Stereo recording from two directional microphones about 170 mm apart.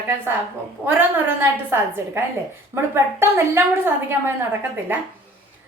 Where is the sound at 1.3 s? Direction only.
15° right (ahead or behind).